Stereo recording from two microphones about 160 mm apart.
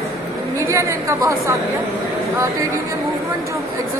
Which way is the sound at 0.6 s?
20° right (ahead or behind).